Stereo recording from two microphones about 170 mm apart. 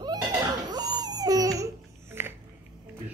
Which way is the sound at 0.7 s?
25° right (ahead or behind).